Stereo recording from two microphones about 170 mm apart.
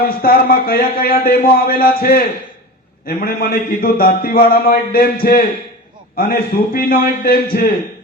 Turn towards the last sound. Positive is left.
turn(degrees=60)  # may be behind; listen again after turning